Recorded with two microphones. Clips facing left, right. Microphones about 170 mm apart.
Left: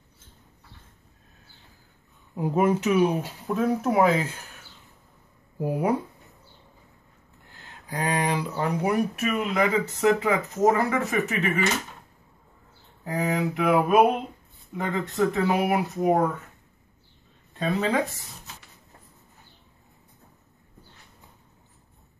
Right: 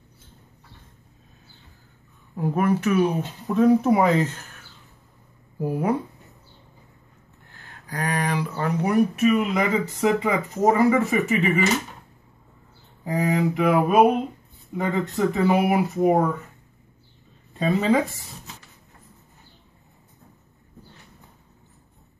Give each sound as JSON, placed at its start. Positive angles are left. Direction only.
{"t": 2.3, "sound": "speech", "side_deg": 15}
{"t": 3.2, "sound": "speech", "side_deg": 5}
{"t": 5.6, "sound": "speech", "side_deg": 10}
{"t": 7.8, "sound": "speech", "side_deg": 20}
{"t": 8.8, "sound": "speech", "side_deg": 0}
{"t": 13.0, "sound": "speech", "side_deg": 0}
{"t": 17.6, "sound": "speech", "side_deg": 0}